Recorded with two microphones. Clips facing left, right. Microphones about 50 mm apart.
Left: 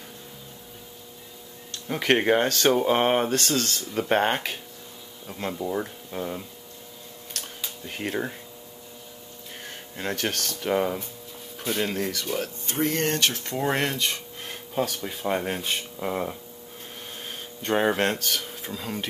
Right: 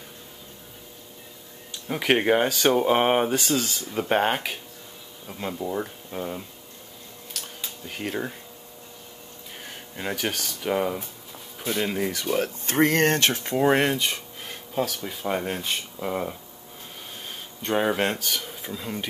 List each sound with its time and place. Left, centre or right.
1.7 s speech: centre
7.3 s a sound: centre
9.7 s speech: centre
12.6 s speech: right
13.4 s speech: centre
17.6 s speech: centre